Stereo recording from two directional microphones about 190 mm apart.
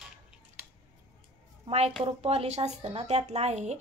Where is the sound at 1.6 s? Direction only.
35° right (ahead or behind).